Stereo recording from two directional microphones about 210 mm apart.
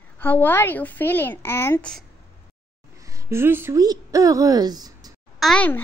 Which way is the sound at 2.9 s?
15° right (ahead or behind).